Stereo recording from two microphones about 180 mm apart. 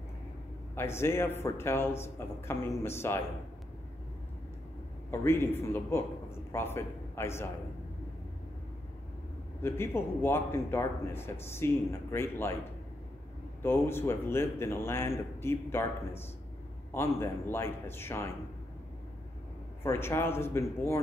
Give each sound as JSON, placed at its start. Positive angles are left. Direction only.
{"t": 0.7, "sound": "a man's voice", "side_deg": 15}
{"t": 5.2, "sound": "a man's voice", "side_deg": 10}
{"t": 9.6, "sound": "a man's voice", "side_deg": 15}
{"t": 13.6, "sound": "a man's voice", "side_deg": 15}
{"t": 19.8, "sound": "a man's voice", "side_deg": 15}